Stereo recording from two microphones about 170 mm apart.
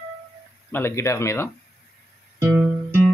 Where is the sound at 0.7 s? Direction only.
15° left (ahead or behind).